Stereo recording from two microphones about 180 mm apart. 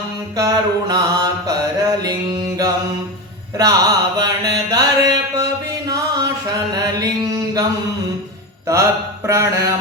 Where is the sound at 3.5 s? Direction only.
20° right (ahead or behind).